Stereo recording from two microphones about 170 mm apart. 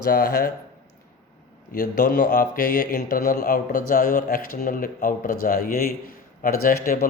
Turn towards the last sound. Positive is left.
turn(degrees=60)  # may be behind; listen again after turning